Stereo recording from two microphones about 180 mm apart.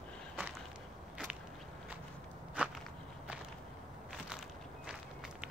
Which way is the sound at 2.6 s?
5° right (ahead or behind).